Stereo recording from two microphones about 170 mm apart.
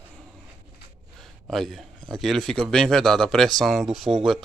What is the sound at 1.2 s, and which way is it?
A man's voice, centre (ahead or behind).